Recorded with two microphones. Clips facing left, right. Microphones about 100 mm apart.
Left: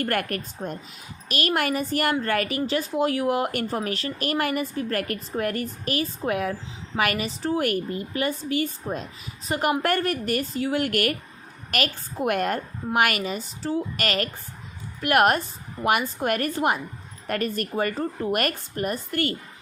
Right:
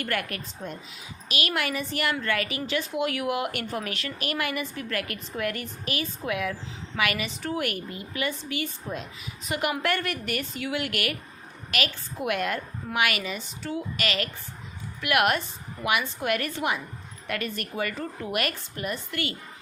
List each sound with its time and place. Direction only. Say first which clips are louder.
0.0 s a woman's voice: left 4 dB; 45° left (ahead or behind)